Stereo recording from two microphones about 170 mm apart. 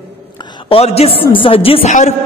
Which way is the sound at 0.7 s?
35° left (ahead or behind).